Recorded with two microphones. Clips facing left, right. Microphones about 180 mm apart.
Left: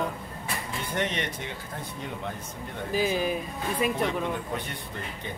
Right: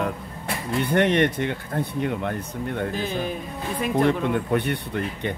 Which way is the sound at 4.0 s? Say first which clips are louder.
Right 7 dB; 65° right (ahead or behind).